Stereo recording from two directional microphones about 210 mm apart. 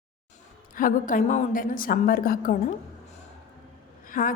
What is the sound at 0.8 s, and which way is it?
A woman's voice, 40° left (ahead or behind).